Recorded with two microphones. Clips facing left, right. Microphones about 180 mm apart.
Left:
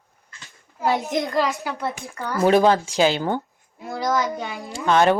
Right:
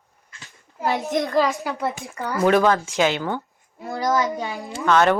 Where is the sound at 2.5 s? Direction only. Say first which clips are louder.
Left 2 dB; 35° left (ahead or behind).